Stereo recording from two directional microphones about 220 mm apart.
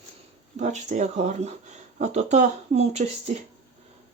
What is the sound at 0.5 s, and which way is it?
Speech, 35° right (ahead or behind).